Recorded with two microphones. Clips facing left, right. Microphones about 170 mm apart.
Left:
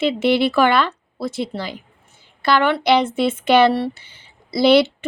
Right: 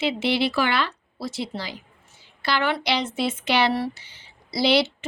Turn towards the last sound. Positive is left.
turn(degrees=55)  # may be behind; listen again after turning